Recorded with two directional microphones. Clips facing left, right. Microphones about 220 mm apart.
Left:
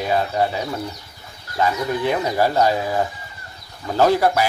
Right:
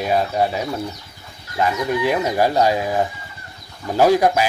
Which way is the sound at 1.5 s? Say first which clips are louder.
Right 1 dB; 10° right (ahead or behind).